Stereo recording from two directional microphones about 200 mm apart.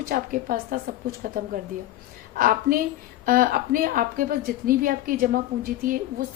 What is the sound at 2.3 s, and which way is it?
A woman's voice, 45° right (ahead or behind).